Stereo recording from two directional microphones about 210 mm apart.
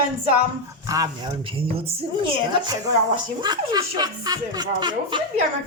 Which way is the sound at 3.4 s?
20° right (ahead or behind).